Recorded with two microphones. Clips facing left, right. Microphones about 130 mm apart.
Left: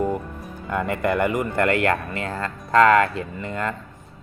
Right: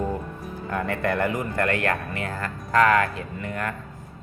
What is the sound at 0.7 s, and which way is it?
Speech, 20° left (ahead or behind).